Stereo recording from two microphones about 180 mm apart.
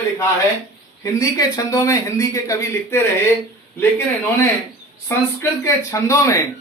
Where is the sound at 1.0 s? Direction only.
20° left (ahead or behind).